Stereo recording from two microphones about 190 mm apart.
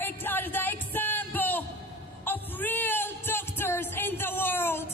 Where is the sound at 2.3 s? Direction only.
10° left (ahead or behind).